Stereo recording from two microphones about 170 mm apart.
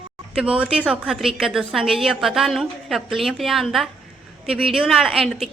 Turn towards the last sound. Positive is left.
turn(degrees=0)  # may be behind; listen again after turning